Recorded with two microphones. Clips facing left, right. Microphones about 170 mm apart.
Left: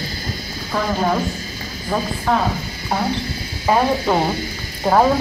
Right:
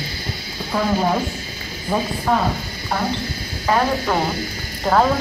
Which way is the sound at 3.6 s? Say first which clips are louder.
Left 2 dB; 15° left (ahead or behind).